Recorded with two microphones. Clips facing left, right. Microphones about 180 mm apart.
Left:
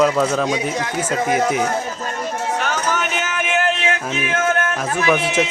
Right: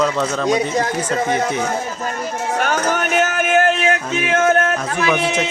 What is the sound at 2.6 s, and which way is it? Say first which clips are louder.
Music: right 3 dB; 50° right (ahead or behind).